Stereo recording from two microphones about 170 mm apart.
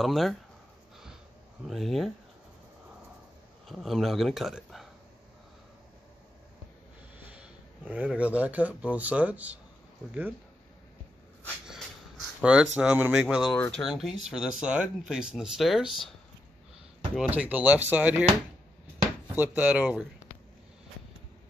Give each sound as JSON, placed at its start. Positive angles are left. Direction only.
{"t": 0.0, "sound": "speech", "side_deg": 0}
{"t": 1.7, "sound": "speech", "side_deg": 0}
{"t": 3.6, "sound": "speech", "side_deg": 0}
{"t": 7.8, "sound": "speech", "side_deg": -5}
{"t": 12.4, "sound": "speech", "side_deg": -5}
{"t": 15.8, "sound": "speech", "side_deg": 30}
{"t": 17.1, "sound": "speech", "side_deg": -5}
{"t": 19.3, "sound": "speech", "side_deg": -10}